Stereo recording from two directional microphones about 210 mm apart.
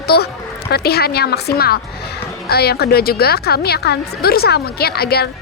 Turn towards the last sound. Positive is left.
turn(degrees=50)  # may be behind; listen again after turning